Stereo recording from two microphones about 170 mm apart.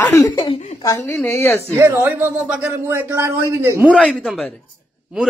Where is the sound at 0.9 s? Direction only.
15° left (ahead or behind).